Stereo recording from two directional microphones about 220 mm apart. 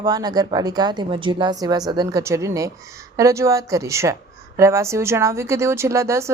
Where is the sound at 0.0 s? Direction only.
15° right (ahead or behind).